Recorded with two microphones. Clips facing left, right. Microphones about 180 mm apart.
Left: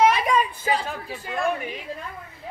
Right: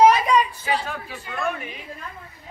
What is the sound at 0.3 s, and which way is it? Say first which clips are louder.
A woman's voice: right 1 dB; 40° left (ahead or behind).